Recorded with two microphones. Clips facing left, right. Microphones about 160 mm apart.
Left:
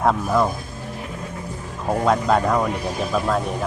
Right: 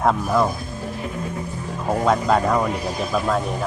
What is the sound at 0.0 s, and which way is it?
Speech, centre (ahead or behind).